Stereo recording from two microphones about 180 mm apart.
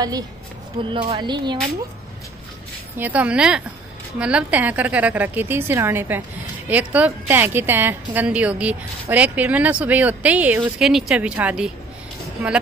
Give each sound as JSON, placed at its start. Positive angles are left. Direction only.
{"t": 0.9, "sound": "speech", "side_deg": -30}
{"t": 3.0, "sound": "a woman's voice", "side_deg": -10}